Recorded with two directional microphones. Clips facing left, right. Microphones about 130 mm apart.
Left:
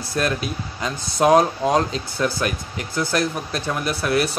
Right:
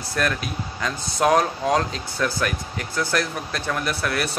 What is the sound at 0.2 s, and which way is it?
Speech, 25° left (ahead or behind).